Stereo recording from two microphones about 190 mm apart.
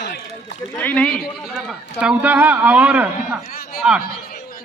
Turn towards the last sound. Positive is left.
turn(degrees=-5)  # may be behind; listen again after turning